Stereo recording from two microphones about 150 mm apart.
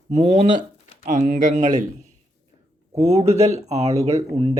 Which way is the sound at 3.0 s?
45° right (ahead or behind).